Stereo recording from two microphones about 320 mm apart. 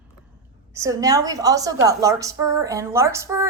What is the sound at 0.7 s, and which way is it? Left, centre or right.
A woman's voice, centre.